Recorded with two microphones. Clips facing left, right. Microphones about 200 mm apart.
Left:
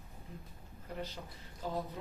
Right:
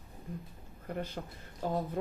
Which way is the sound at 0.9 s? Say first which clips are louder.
Right 5 dB; 55° right (ahead or behind).